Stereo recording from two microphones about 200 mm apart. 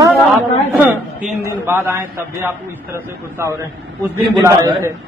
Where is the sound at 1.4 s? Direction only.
15° right (ahead or behind).